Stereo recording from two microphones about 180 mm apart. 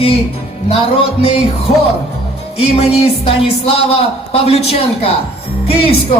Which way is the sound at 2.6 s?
35° left (ahead or behind).